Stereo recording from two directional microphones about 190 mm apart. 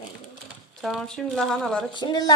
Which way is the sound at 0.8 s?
Centre (ahead or behind).